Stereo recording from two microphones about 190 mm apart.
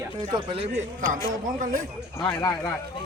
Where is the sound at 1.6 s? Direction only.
45° right (ahead or behind).